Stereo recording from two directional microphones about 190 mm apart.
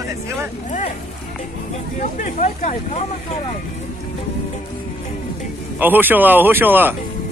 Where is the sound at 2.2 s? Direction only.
40° left (ahead or behind).